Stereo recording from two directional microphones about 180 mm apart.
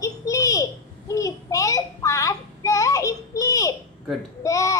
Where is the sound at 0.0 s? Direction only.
20° left (ahead or behind).